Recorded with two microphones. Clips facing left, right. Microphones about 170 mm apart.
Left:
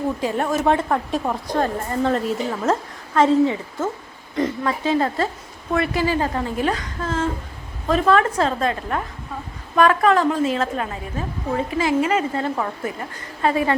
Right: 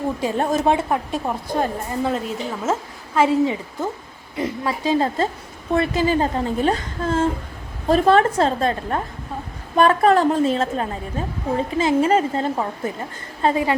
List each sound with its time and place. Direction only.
0.2 s a woman's voice: 30° right (ahead or behind)
0.7 s a woman's voice: 10° right (ahead or behind)
4.9 s a woman's voice: 25° right (ahead or behind)